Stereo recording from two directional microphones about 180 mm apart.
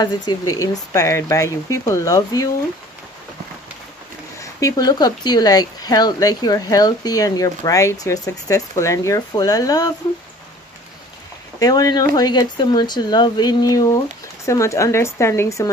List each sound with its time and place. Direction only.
0.0 s speech: 20° left (ahead or behind)
4.4 s speech: 20° left (ahead or behind)
11.6 s speech: 20° left (ahead or behind)